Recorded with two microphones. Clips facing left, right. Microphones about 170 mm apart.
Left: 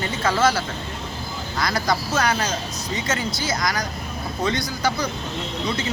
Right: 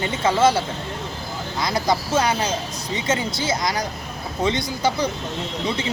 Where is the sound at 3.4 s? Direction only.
25° right (ahead or behind).